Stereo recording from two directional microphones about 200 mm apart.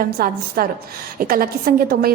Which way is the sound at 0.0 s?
45° right (ahead or behind).